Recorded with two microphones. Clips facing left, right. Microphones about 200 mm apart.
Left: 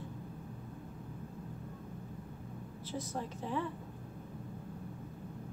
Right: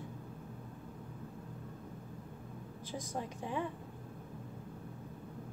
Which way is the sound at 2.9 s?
15° right (ahead or behind).